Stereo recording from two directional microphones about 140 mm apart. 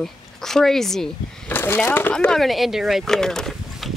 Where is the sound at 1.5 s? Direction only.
15° left (ahead or behind).